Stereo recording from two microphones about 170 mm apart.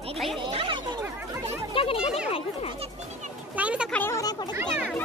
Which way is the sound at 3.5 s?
10° right (ahead or behind).